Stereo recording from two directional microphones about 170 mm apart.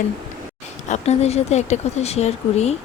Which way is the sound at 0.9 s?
40° left (ahead or behind).